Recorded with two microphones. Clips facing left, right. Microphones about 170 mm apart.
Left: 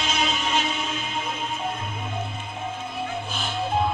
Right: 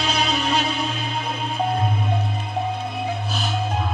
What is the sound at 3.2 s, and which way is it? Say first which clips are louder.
Music: right 4 dB; 40° right (ahead or behind).